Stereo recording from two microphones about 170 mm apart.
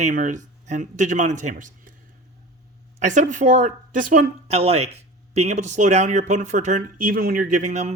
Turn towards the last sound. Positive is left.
turn(degrees=-45)  # may be behind; listen again after turning